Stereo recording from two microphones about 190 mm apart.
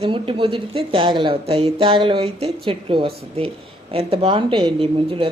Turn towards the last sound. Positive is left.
turn(degrees=-30)  # may be behind; listen again after turning